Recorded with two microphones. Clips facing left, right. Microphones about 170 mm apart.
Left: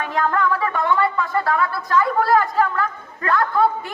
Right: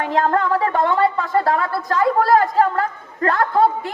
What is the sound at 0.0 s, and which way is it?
Speech, 35° right (ahead or behind).